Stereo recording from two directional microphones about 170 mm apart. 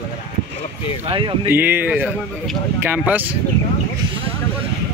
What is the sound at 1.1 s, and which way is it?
Speech, 30° right (ahead or behind).